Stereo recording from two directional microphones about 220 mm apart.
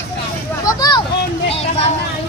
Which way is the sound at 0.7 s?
20° left (ahead or behind).